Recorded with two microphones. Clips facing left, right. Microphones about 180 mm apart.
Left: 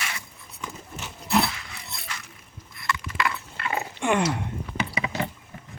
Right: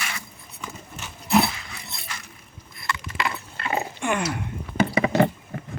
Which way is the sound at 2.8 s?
25° right (ahead or behind).